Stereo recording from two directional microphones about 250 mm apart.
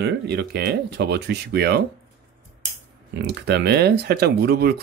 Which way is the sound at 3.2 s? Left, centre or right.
Right.